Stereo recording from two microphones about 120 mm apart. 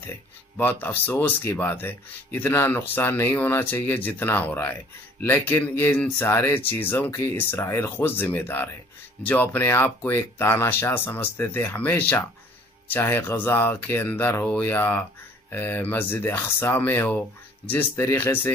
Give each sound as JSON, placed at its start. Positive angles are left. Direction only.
{"t": 0.6, "sound": "speech", "side_deg": 15}